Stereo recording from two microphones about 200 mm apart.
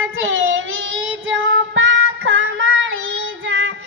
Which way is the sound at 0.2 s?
75° right (ahead or behind).